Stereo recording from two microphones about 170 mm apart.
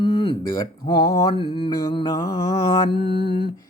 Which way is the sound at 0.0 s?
25° left (ahead or behind).